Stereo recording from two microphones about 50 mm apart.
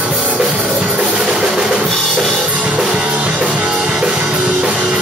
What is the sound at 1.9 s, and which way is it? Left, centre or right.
Music, centre.